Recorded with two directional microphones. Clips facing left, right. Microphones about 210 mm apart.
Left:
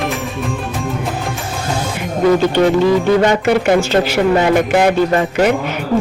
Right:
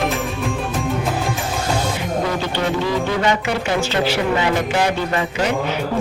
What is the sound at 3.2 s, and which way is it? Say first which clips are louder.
Speech: left 7 dB; 45° left (ahead or behind).